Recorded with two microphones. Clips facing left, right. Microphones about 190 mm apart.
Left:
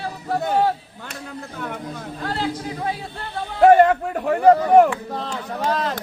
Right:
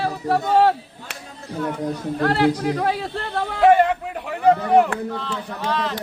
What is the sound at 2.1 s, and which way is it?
Speech, 70° right (ahead or behind).